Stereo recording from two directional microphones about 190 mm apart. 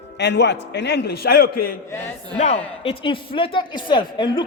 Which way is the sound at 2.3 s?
35° left (ahead or behind).